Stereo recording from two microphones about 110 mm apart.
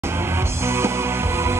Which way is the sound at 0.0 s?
20° right (ahead or behind).